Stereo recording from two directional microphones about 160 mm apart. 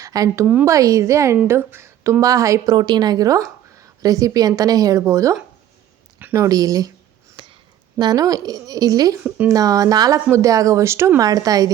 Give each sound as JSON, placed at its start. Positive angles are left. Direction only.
{"t": 0.0, "sound": "a woman's voice", "side_deg": -20}
{"t": 7.4, "sound": "a sound", "side_deg": -30}
{"t": 7.9, "sound": "a woman's voice", "side_deg": -25}